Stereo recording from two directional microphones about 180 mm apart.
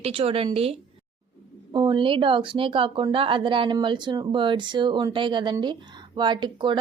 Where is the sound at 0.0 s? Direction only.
30° right (ahead or behind).